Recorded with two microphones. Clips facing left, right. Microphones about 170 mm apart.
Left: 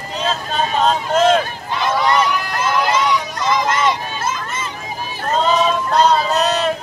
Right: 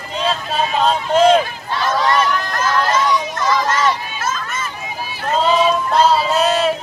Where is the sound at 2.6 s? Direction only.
15° left (ahead or behind).